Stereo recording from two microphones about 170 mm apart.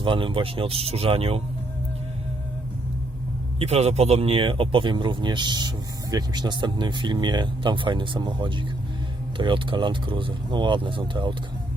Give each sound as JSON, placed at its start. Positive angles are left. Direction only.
{"t": 0.0, "sound": "speech", "side_deg": -30}
{"t": 3.6, "sound": "speech", "side_deg": -40}